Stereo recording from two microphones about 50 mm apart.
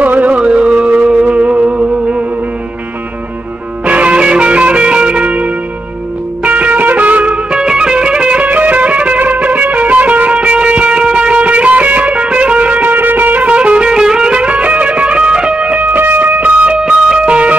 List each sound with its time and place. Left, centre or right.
0.0 s music: right
3.8 s music: right
7.5 s music: centre; by 13.5 s right
13.5 s music: right